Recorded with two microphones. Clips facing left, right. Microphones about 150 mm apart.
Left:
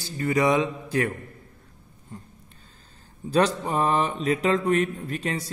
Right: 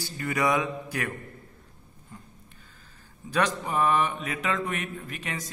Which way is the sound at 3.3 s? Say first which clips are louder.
Left 4 dB; 30° left (ahead or behind).